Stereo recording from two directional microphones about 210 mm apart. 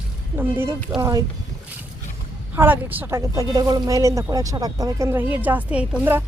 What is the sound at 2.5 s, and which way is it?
Speech, 10° right (ahead or behind).